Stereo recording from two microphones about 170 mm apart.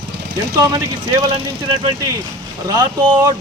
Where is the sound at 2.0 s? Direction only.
20° right (ahead or behind).